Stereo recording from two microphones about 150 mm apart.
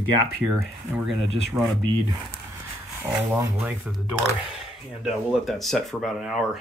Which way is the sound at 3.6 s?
5° right (ahead or behind).